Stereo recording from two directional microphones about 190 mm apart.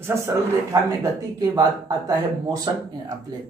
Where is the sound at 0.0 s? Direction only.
15° right (ahead or behind).